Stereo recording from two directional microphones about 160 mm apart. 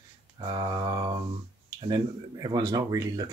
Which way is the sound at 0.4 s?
30° right (ahead or behind).